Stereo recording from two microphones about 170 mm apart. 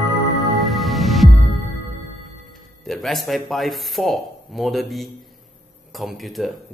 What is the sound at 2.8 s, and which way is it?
Speech, centre (ahead or behind).